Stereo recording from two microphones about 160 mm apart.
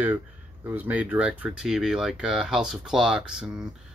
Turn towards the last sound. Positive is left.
turn(degrees=-5)  # may be behind; listen again after turning